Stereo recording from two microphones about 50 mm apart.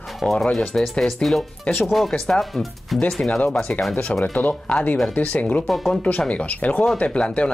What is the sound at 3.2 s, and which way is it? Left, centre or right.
Speech, left.